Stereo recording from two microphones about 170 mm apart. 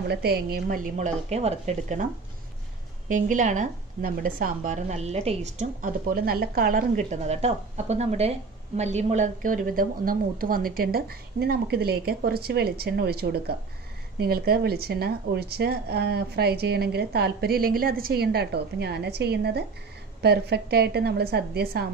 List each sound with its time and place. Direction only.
0.1 s speech: 65° right (ahead or behind); by 2.0 s 45° right (ahead or behind)
3.1 s a woman's voice: 50° right (ahead or behind); by 21.8 s 70° right (ahead or behind)